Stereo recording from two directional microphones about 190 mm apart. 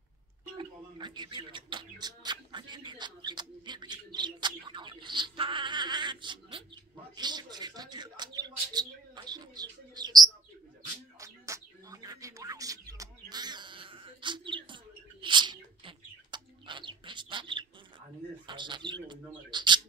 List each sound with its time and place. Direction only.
0.6 s speech: 25° right (ahead or behind)
11.1 s bird: 15° right (ahead or behind)
18.5 s speech: 25° right (ahead or behind)